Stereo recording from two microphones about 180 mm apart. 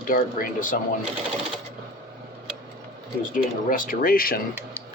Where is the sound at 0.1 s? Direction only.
50° left (ahead or behind).